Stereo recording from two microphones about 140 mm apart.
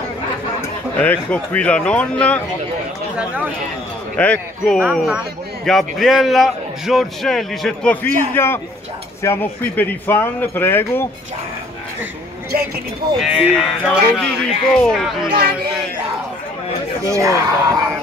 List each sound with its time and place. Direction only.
0.9 s speech: 10° left (ahead or behind)
4.2 s speech: 5° left (ahead or behind)
4.8 s a man's voice: 10° right (ahead or behind); by 11.1 s 15° left (ahead or behind)
12.5 s speech: 90° right
13.2 s speech: 10° right (ahead or behind)
13.6 s a man's voice: 5° left (ahead or behind)
17.1 s speech: 25° right (ahead or behind)